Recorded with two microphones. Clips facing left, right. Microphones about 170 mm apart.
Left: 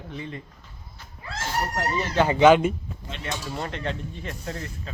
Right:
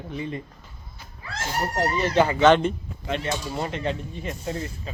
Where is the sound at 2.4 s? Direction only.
5° left (ahead or behind); by 4.2 s 10° right (ahead or behind).